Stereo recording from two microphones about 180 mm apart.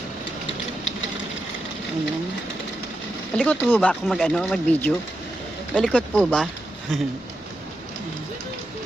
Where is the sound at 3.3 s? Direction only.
5° left (ahead or behind).